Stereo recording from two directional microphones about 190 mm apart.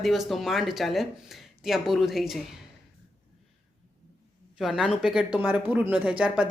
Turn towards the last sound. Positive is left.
turn(degrees=-5)  # may be behind; listen again after turning